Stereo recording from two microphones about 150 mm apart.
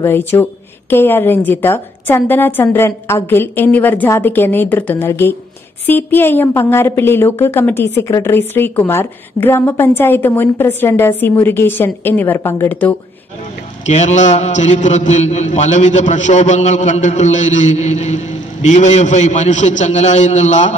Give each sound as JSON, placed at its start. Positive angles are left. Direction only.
{"t": 0.0, "sound": "a woman's voice", "side_deg": 15}
{"t": 13.8, "sound": "a man's voice", "side_deg": 50}